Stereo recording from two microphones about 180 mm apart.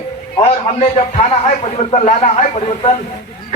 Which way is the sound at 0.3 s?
35° left (ahead or behind).